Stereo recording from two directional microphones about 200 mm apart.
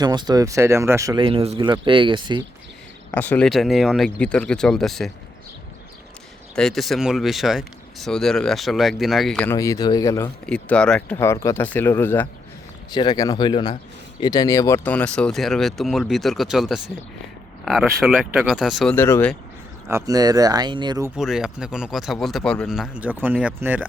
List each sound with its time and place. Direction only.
0.0 s speech: 20° right (ahead or behind)
1.2 s speech: 30° right (ahead or behind)
3.1 s speech: 10° left (ahead or behind)
6.6 s speech: centre (ahead or behind); by 10.2 s 15° left (ahead or behind)
10.4 s speech: 5° left (ahead or behind)
19.9 s speech: 15° right (ahead or behind)
21.2 s speech: 5° right (ahead or behind)